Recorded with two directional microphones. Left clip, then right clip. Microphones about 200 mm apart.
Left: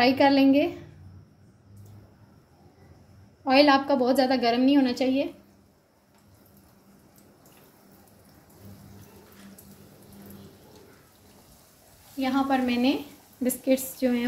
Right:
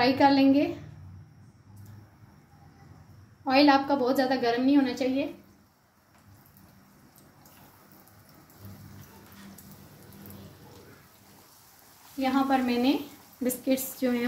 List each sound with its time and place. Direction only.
0.0 s speech: 25° left (ahead or behind)
3.4 s a woman's voice: 35° left (ahead or behind)
12.2 s speech: 20° left (ahead or behind)